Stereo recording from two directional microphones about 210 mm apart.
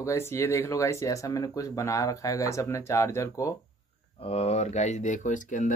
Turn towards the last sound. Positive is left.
turn(degrees=35)  # may be behind; listen again after turning